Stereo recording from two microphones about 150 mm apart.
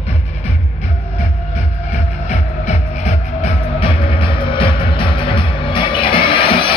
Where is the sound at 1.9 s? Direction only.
50° left (ahead or behind).